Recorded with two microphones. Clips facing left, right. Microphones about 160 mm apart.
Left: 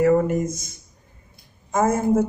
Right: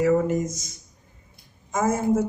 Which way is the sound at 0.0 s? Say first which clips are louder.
Left 3 dB; 55° left (ahead or behind).